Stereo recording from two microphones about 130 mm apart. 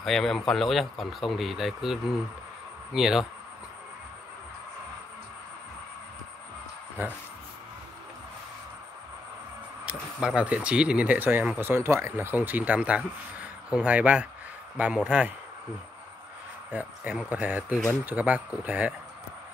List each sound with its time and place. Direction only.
0.0 s speech: 5° left (ahead or behind)
7.0 s speech: 15° right (ahead or behind)
9.8 s speech: 10° right (ahead or behind)
16.7 s speech: 10° right (ahead or behind)